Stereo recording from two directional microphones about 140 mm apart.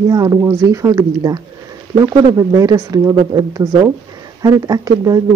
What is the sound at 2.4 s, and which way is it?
Speech, 25° right (ahead or behind).